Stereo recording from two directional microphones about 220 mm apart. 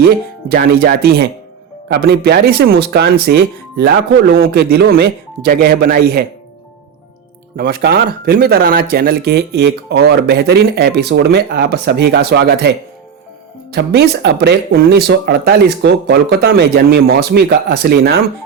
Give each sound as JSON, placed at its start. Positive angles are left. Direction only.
{"t": 0.0, "sound": "speech", "side_deg": -45}
{"t": 7.5, "sound": "speech", "side_deg": -45}